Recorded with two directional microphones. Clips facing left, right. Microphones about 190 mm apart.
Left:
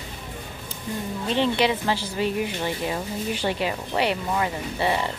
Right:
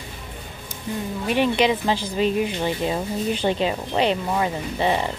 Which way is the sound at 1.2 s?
15° right (ahead or behind).